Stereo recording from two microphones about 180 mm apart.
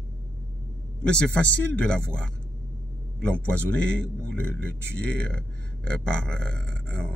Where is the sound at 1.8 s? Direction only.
5° left (ahead or behind).